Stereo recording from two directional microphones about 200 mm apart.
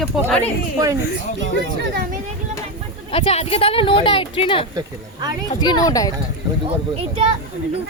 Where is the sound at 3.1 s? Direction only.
30° left (ahead or behind).